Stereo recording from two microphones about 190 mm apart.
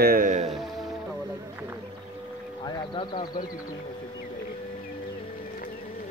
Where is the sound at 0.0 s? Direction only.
45° right (ahead or behind).